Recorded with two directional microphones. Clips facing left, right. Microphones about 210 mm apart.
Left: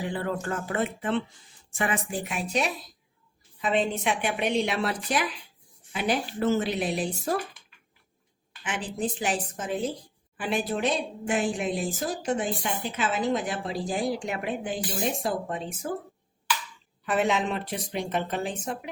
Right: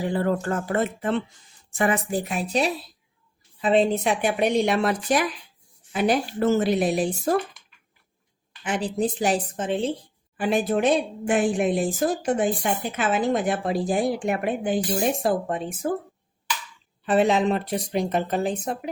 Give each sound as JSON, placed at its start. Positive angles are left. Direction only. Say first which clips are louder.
{"t": 0.0, "sound": "a woman's voice", "louder": "right 6 dB", "side_deg": -40}
{"t": 8.6, "sound": "speech", "louder": "right 6 dB", "side_deg": -40}
{"t": 10.3, "sound": "a woman's voice", "louder": "right 6 dB", "side_deg": -45}
{"t": 17.1, "sound": "speech", "louder": "right 6 dB", "side_deg": -35}